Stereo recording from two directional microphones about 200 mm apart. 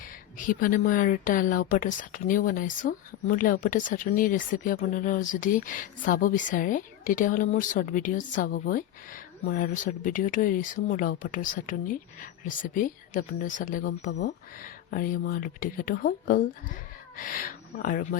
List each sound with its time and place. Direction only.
0.3 s a woman's voice: 40° left (ahead or behind)
14.1 s speech: 55° left (ahead or behind)